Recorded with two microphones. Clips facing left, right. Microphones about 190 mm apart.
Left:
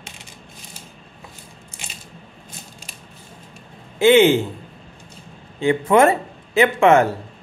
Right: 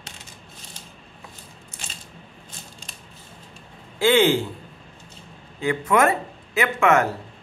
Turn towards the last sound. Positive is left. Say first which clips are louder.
# left 5 dB
turn(degrees=30)  # may be behind; listen again after turning